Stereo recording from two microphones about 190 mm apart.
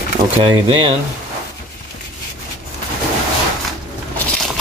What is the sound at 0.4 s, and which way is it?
Speech, 25° right (ahead or behind).